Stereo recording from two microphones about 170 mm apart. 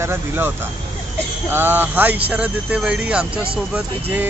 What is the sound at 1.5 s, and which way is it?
Speech, 10° right (ahead or behind).